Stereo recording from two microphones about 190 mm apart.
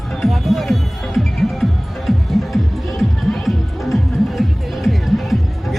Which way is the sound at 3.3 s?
Centre (ahead or behind).